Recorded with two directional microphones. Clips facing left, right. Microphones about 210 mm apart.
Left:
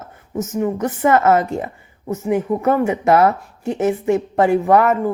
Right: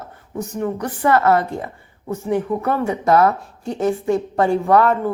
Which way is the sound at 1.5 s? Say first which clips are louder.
Left 4 dB; 20° left (ahead or behind).